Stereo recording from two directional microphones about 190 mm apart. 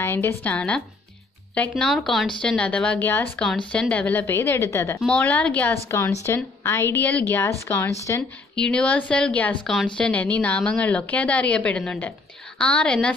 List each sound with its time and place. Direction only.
0.0 s speech: 15° left (ahead or behind)